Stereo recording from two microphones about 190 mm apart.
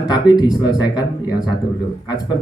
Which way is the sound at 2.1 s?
20° left (ahead or behind).